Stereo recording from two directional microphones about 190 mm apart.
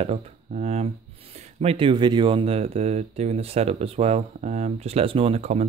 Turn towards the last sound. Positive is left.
turn(degrees=-35)  # may be behind; listen again after turning